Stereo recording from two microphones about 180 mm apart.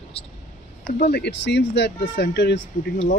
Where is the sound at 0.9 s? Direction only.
60° left (ahead or behind).